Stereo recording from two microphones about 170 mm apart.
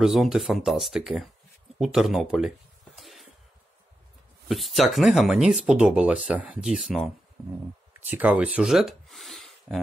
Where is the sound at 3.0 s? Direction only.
Centre (ahead or behind).